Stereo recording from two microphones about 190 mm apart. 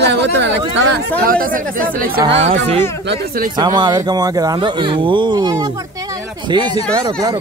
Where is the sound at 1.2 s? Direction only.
50° right (ahead or behind).